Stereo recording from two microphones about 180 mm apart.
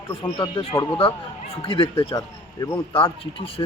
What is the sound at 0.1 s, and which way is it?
Speech, 30° left (ahead or behind).